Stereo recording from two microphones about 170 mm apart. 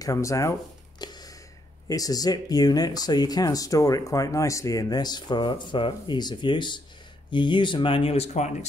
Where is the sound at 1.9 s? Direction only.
20° left (ahead or behind).